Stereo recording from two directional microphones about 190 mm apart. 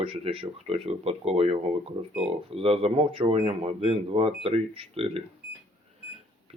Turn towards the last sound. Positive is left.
turn(degrees=-30)  # may be behind; listen again after turning